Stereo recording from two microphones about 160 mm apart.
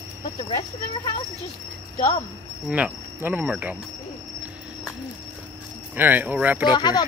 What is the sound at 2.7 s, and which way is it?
Cricket, 10° right (ahead or behind).